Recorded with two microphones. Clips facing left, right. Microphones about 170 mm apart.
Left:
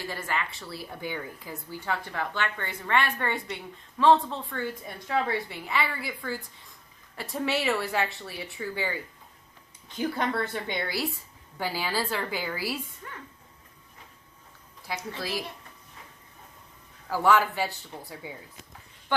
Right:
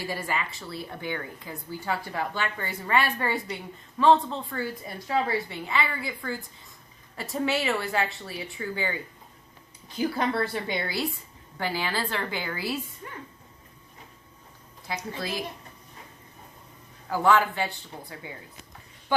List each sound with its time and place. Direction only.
0.0 s speech: 10° right (ahead or behind)
0.6 s a woman's voice: 5° left (ahead or behind)
10.0 s a woman's voice: 5° right (ahead or behind)
11.8 s a woman's voice: 10° left (ahead or behind)
13.0 s a sound: 20° right (ahead or behind)
17.1 s a woman's voice: 5° left (ahead or behind)